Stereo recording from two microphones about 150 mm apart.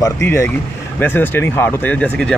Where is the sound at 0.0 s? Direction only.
15° left (ahead or behind).